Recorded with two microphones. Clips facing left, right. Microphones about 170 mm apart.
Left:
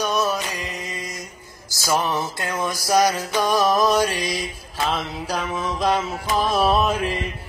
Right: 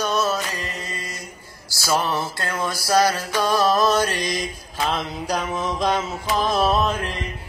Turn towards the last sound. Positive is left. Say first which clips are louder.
# left 1 dB
turn(degrees=10)  # may be behind; listen again after turning